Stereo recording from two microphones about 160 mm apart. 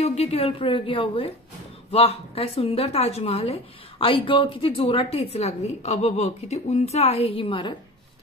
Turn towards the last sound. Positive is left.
turn(degrees=35)  # may be behind; listen again after turning